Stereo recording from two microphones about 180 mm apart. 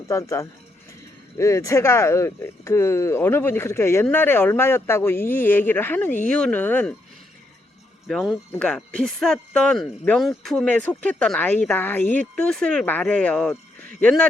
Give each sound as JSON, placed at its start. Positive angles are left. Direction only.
{"t": 0.1, "sound": "speech", "side_deg": 15}
{"t": 8.0, "sound": "speech", "side_deg": 0}